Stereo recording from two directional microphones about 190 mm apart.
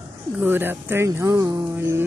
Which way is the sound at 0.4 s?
10° right (ahead or behind).